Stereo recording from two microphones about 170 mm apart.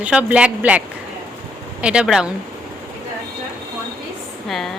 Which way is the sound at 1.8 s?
5° right (ahead or behind).